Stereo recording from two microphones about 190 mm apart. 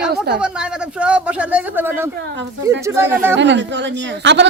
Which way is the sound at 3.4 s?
70° right (ahead or behind).